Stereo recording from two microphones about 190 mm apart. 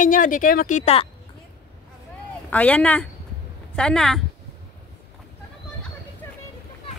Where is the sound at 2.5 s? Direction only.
5° left (ahead or behind).